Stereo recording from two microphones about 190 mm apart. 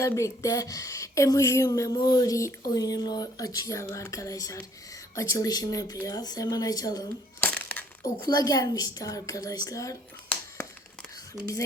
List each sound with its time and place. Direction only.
0.0 s a woman's voice: 15° left (ahead or behind)
7.4 s crumpling: 10° left (ahead or behind)
8.2 s a woman's voice: 20° left (ahead or behind)